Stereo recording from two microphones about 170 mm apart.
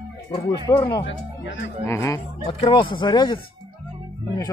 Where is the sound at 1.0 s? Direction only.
90° left.